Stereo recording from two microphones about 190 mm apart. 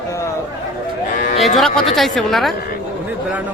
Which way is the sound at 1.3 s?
Centre (ahead or behind).